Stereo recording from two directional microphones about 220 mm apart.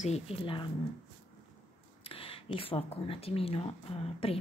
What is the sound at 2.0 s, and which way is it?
Speech, 25° left (ahead or behind).